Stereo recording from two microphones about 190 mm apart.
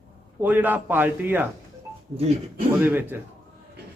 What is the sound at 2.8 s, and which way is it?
Speech, 10° right (ahead or behind).